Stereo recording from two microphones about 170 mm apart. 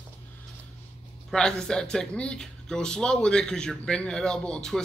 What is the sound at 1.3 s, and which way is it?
Speech, 5° left (ahead or behind).